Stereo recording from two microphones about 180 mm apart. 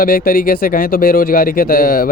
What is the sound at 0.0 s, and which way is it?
Speech, 55° left (ahead or behind).